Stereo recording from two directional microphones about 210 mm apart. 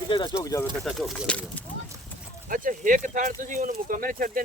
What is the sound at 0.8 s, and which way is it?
Speech, centre (ahead or behind).